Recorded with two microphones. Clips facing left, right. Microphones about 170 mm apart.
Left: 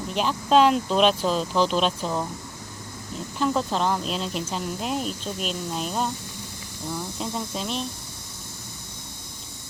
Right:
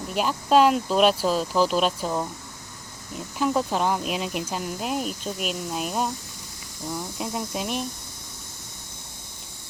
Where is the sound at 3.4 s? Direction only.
10° right (ahead or behind).